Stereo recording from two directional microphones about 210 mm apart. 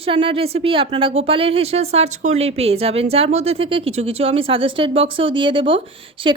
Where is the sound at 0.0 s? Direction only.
25° right (ahead or behind).